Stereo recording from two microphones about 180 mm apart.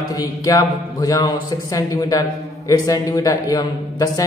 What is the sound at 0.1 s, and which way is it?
A man's voice, 20° left (ahead or behind).